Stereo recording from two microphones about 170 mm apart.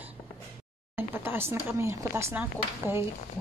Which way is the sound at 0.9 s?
15° right (ahead or behind).